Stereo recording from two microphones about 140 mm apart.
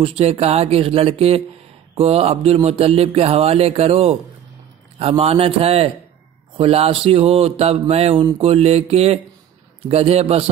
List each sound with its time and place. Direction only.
0.0 s mantra: 45° right (ahead or behind)